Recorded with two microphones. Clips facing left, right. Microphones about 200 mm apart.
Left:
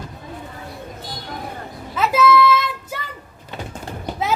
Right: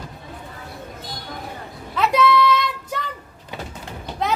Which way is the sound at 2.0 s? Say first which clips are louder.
Left 2 dB; 5° left (ahead or behind).